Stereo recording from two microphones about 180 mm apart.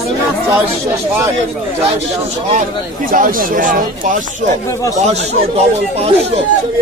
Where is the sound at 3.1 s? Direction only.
50° right (ahead or behind).